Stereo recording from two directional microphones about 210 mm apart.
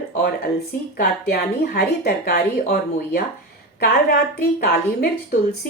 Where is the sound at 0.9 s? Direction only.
45° left (ahead or behind).